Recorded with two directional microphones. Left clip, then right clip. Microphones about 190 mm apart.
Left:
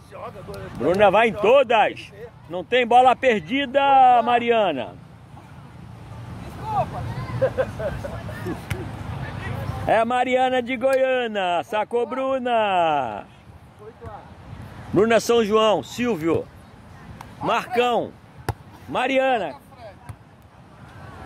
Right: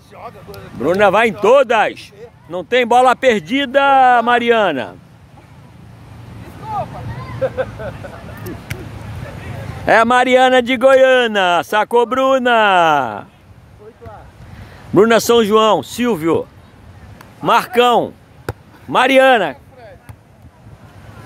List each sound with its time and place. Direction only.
0.5 s speech: 25° right (ahead or behind)
7.4 s speech: 50° right (ahead or behind)
8.7 s a sound: 45° right (ahead or behind)
9.8 s speech: 45° right (ahead or behind)
15.0 s speech: 35° right (ahead or behind)
17.5 s speech: 40° right (ahead or behind)
18.5 s basketball bounce: 20° left (ahead or behind)
18.9 s speech: 45° right (ahead or behind)